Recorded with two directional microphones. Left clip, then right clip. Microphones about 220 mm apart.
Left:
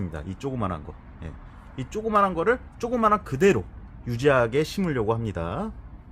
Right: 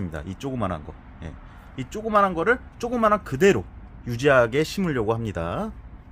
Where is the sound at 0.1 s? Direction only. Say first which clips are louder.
Right 1 dB; 20° right (ahead or behind).